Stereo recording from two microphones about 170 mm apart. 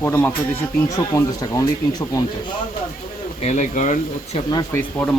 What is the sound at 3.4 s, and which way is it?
Speech, 45° left (ahead or behind).